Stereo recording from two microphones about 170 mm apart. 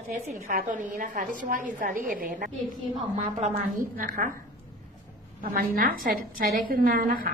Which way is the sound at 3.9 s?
55° right (ahead or behind).